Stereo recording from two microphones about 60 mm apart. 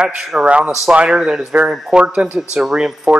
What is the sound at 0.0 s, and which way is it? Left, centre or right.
A man's voice, centre.